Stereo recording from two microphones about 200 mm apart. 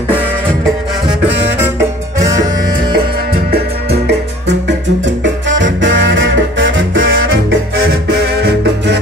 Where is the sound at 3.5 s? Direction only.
55° right (ahead or behind).